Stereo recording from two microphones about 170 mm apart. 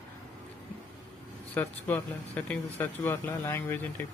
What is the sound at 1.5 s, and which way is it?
Speech, 10° left (ahead or behind).